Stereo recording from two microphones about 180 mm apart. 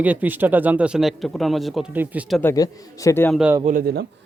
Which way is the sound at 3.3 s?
10° right (ahead or behind).